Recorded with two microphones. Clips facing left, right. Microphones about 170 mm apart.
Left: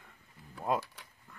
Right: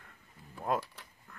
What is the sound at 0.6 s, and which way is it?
Speech, centre (ahead or behind).